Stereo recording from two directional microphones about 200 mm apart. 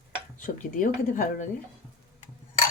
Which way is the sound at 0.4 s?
40° left (ahead or behind).